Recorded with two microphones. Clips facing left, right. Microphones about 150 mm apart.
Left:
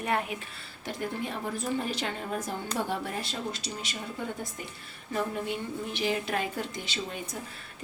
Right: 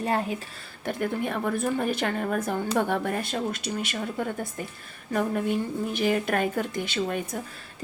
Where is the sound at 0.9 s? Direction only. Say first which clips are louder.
Right 6 dB; 55° right (ahead or behind).